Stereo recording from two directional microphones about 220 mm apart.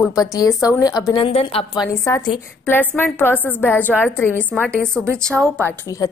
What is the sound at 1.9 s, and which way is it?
A woman's voice, 15° left (ahead or behind).